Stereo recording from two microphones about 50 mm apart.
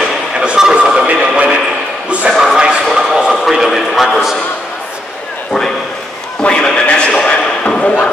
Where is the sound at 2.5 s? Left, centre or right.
Centre.